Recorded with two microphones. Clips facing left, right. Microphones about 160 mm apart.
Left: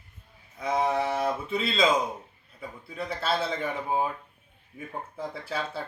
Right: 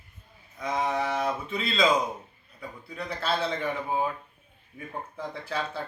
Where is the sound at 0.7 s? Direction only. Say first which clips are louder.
Left 3 dB; 30° left (ahead or behind).